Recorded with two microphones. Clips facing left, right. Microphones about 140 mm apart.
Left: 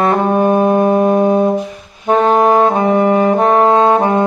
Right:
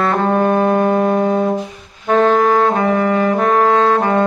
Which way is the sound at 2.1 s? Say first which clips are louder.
Left 2 dB; 20° left (ahead or behind).